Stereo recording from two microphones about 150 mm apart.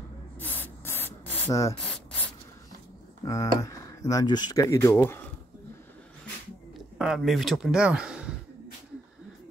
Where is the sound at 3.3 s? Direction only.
20° left (ahead or behind).